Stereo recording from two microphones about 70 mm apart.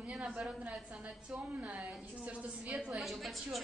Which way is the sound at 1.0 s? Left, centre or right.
Centre.